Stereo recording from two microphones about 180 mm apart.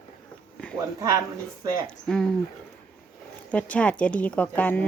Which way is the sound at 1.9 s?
5° left (ahead or behind).